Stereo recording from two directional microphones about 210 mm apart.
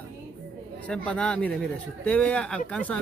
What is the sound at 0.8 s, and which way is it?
Speech, 5° left (ahead or behind).